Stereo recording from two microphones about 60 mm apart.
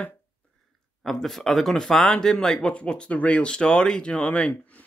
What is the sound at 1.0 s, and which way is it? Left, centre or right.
Speech, centre.